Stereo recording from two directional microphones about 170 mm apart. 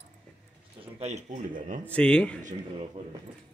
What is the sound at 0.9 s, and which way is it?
Speech, 40° right (ahead or behind).